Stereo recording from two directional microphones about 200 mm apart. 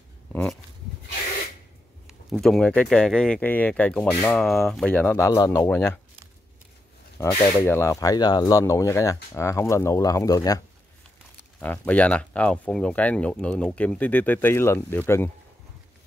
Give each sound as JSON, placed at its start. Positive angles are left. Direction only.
{"t": 0.3, "sound": "a sound", "side_deg": 5}
{"t": 2.0, "sound": "speech", "side_deg": 0}
{"t": 7.5, "sound": "speech", "side_deg": 10}
{"t": 11.6, "sound": "speech", "side_deg": 10}